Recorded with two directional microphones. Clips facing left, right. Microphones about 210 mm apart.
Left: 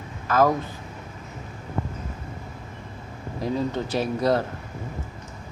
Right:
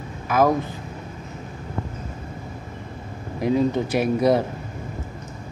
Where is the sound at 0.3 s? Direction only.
10° right (ahead or behind).